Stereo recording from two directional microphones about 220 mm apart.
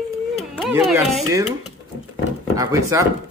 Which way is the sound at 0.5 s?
Centre (ahead or behind).